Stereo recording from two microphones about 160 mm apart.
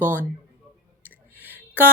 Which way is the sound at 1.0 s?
10° left (ahead or behind).